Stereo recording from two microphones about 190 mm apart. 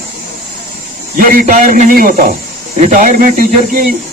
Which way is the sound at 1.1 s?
50° right (ahead or behind).